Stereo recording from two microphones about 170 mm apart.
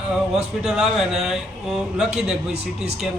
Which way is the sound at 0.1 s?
5° right (ahead or behind).